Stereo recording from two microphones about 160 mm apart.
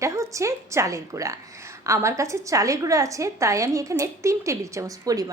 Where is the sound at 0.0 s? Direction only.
20° right (ahead or behind).